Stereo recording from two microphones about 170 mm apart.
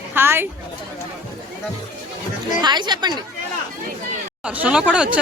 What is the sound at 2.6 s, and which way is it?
Speech, 25° right (ahead or behind).